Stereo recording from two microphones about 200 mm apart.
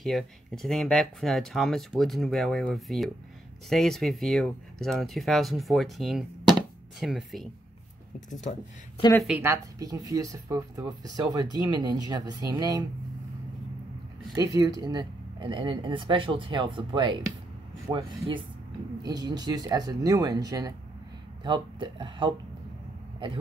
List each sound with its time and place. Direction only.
0.0 s speech: centre (ahead or behind)
9.2 s speech: 10° right (ahead or behind)
14.3 s speech: 15° right (ahead or behind)